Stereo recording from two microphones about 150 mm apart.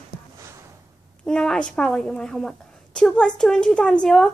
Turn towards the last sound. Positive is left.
turn(degrees=5)  # may be behind; listen again after turning